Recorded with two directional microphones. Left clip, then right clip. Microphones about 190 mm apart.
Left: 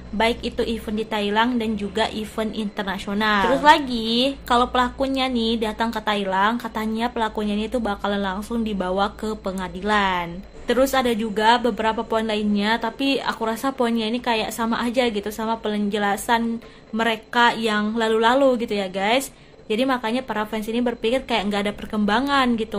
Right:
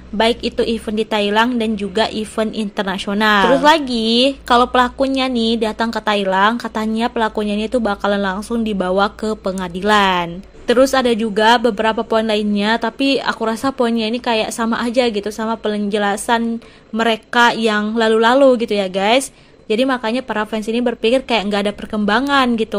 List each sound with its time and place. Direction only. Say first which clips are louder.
0.2 s a woman's voice: right 6 dB; 30° right (ahead or behind)